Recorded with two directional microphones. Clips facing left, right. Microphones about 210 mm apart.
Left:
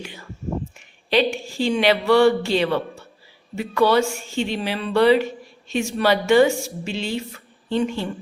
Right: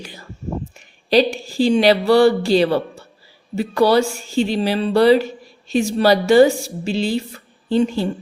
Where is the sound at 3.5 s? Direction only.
35° right (ahead or behind).